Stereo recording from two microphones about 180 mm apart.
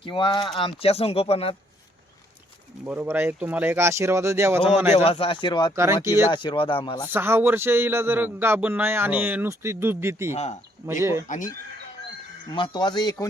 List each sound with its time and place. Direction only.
0.0 s speech: 25° left (ahead or behind)
2.8 s speech: 10° right (ahead or behind)
4.9 s speech: 30° left (ahead or behind)
5.7 s speech: 15° right (ahead or behind)
6.3 s speech: 25° left (ahead or behind)
7.1 s speech: 10° right (ahead or behind)
10.3 s speech: 40° left (ahead or behind)
12.5 s speech: 25° left (ahead or behind)